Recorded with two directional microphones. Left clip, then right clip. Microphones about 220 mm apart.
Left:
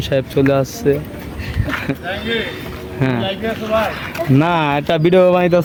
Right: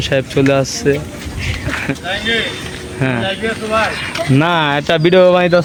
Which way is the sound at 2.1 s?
45° left (ahead or behind).